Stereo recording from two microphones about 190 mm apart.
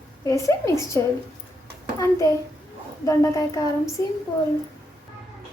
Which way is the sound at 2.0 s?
15° left (ahead or behind).